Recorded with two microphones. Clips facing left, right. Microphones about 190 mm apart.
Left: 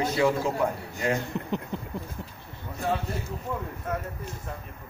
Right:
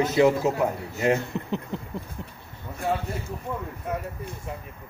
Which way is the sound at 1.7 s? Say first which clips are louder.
Right 1 dB; centre (ahead or behind).